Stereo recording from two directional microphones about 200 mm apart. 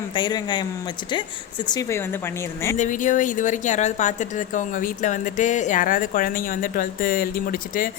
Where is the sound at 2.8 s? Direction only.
40° left (ahead or behind).